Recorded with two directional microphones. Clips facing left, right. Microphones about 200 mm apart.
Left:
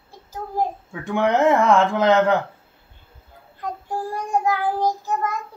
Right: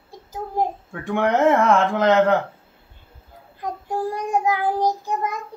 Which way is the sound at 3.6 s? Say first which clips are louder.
Right 2 dB; 20° right (ahead or behind).